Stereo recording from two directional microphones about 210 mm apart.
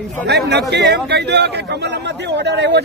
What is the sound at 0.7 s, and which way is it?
A man's voice, 55° right (ahead or behind).